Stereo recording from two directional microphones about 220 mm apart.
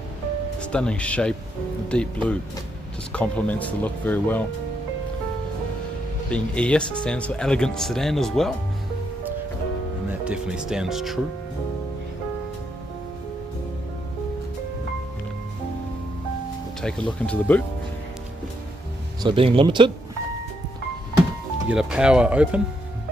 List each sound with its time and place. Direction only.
0.6 s speech: 5° left (ahead or behind)
6.3 s speech: 5° left (ahead or behind)
10.2 s speech: 5° right (ahead or behind)
16.8 s speech: 5° left (ahead or behind)
19.2 s speech: 25° right (ahead or behind)
21.6 s speech: 5° right (ahead or behind)